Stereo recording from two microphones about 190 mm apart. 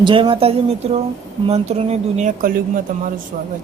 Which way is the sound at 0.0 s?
25° right (ahead or behind).